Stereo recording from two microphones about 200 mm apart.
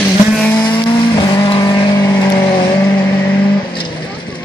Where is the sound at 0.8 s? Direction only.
20° left (ahead or behind).